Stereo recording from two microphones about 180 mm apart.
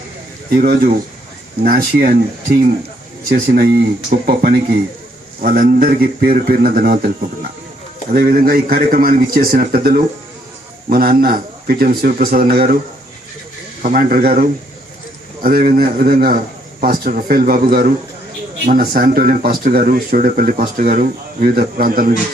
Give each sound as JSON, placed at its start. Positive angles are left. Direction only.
{"t": 0.5, "sound": "speech", "side_deg": -60}
{"t": 8.1, "sound": "speech", "side_deg": -55}
{"t": 13.8, "sound": "speech", "side_deg": -50}